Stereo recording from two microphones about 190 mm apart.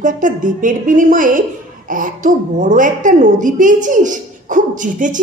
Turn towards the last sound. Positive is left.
turn(degrees=-45)  # may be behind; listen again after turning